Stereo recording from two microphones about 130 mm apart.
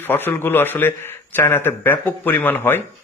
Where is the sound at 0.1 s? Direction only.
15° left (ahead or behind).